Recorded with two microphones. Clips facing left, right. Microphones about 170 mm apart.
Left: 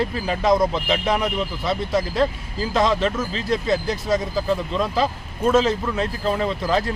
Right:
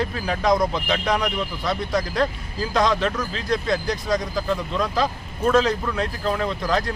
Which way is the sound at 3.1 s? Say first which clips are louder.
Left 2 dB; 25° left (ahead or behind).